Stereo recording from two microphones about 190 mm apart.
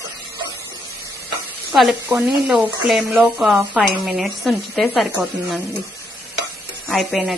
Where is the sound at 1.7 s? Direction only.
Centre (ahead or behind).